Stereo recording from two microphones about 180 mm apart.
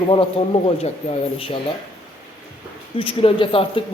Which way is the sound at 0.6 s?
30° left (ahead or behind).